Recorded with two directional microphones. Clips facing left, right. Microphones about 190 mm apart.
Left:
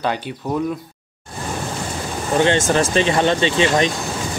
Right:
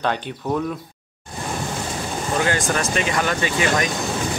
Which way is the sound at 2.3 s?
25° left (ahead or behind).